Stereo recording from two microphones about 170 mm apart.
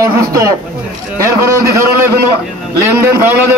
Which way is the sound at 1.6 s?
15° right (ahead or behind).